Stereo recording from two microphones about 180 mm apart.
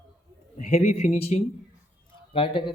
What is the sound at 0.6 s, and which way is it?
A man's voice, 35° left (ahead or behind).